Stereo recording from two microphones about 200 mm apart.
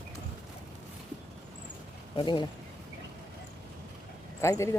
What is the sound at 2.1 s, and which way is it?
Speech, 25° left (ahead or behind).